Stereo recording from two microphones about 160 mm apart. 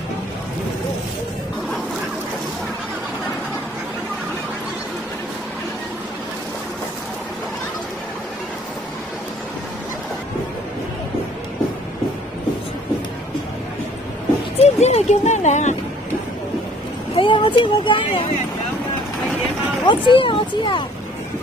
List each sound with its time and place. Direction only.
14.6 s music: 40° left (ahead or behind)
17.2 s speech: 30° left (ahead or behind)
19.9 s speech: 30° left (ahead or behind)